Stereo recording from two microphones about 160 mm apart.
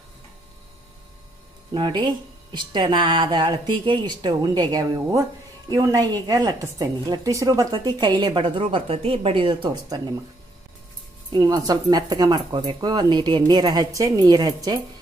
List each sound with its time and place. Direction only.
1.7 s a woman's voice: 30° right (ahead or behind)
11.3 s a woman's voice: 25° right (ahead or behind)